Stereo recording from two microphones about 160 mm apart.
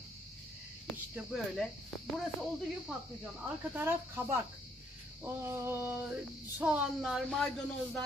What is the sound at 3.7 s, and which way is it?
Speech, 10° right (ahead or behind).